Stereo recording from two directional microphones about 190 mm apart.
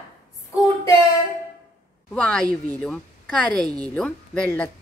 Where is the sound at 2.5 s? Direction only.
10° left (ahead or behind).